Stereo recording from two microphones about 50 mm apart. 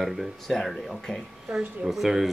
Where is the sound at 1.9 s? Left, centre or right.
Centre.